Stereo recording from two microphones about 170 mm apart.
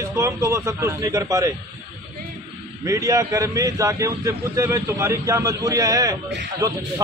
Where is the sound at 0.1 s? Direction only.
15° right (ahead or behind).